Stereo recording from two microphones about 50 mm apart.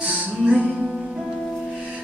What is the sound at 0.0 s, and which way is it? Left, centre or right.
Music, right.